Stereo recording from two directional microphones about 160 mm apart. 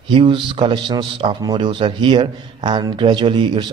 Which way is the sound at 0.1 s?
30° right (ahead or behind).